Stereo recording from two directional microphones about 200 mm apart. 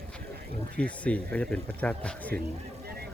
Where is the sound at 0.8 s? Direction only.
5° left (ahead or behind).